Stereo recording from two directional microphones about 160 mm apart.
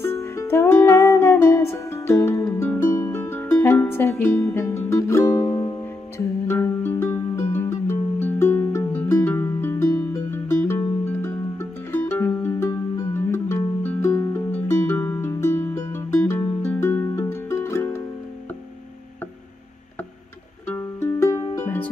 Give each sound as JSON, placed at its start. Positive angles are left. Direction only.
{"t": 0.0, "sound": "music", "side_deg": 15}
{"t": 20.6, "sound": "music", "side_deg": 15}